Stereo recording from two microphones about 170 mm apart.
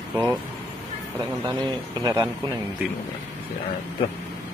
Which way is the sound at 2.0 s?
25° right (ahead or behind).